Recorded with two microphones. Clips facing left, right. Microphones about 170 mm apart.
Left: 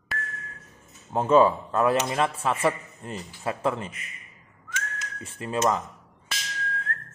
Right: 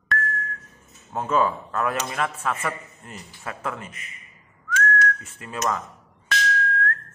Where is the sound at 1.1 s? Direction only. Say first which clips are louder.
Left 4 dB; 25° left (ahead or behind).